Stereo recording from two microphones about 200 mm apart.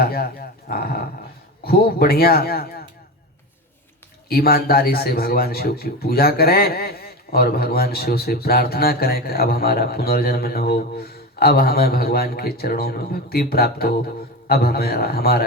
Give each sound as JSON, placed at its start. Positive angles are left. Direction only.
{"t": 0.0, "sound": "a man's voice", "side_deg": 50}
{"t": 4.3, "sound": "a man's voice", "side_deg": 50}